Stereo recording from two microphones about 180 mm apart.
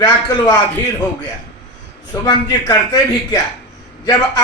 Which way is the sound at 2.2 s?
20° left (ahead or behind).